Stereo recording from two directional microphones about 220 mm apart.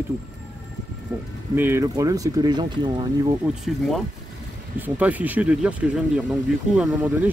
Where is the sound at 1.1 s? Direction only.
5° right (ahead or behind).